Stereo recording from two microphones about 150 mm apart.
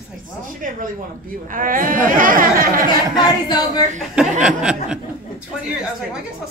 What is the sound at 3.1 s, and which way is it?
Speech, 25° left (ahead or behind).